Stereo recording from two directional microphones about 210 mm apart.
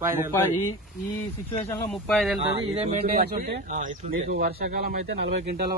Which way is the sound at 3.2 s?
45° right (ahead or behind).